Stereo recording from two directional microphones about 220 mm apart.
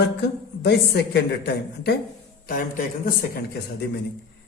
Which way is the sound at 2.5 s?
40° left (ahead or behind).